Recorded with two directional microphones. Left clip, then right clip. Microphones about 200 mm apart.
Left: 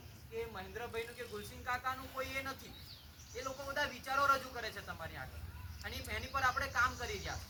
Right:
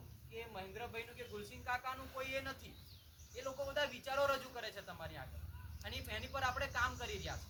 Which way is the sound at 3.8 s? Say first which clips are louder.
Left 3 dB; centre (ahead or behind).